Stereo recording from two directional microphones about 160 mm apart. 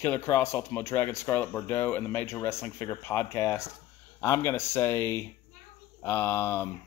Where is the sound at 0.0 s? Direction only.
15° left (ahead or behind).